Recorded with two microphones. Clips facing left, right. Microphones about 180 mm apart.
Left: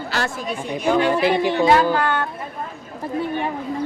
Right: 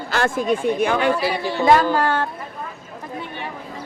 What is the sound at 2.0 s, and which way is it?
Speech, 35° right (ahead or behind).